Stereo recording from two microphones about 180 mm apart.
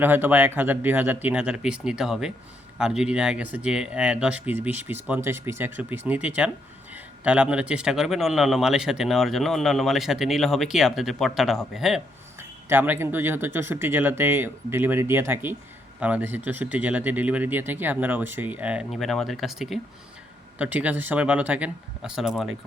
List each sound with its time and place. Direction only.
0.0 s speech: 10° right (ahead or behind)
12.4 s speech: 15° right (ahead or behind)